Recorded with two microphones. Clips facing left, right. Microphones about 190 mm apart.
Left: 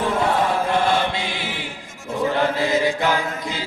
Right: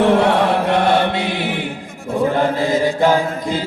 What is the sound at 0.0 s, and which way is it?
Chant, 75° right (ahead or behind).